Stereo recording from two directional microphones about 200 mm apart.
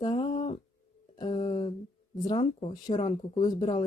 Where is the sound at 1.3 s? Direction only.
30° left (ahead or behind).